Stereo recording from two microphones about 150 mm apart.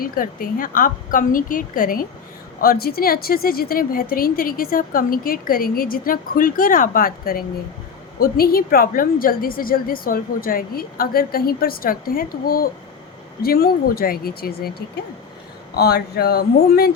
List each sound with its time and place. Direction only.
0.0 s a woman's voice: 70° left (ahead or behind)
2.6 s a woman's voice: 85° left
13.4 s a woman's voice: 85° left
15.7 s a woman's voice: 90° left